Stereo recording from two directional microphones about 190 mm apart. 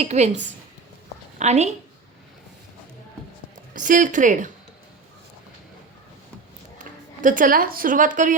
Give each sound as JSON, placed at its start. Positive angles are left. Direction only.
{"t": 0.0, "sound": "a woman's voice", "side_deg": -35}
{"t": 3.8, "sound": "speech", "side_deg": -40}
{"t": 6.7, "sound": "speech", "side_deg": -45}